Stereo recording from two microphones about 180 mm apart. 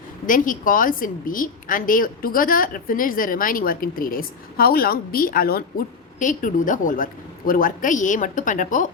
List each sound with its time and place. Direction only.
0.3 s a woman's voice: 50° left (ahead or behind)
6.1 s a woman's voice: 45° left (ahead or behind)